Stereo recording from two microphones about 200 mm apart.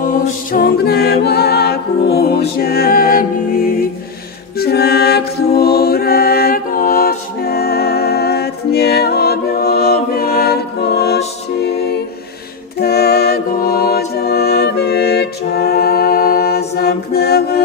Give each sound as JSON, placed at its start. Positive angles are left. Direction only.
{"t": 0.1, "sound": "music", "side_deg": 45}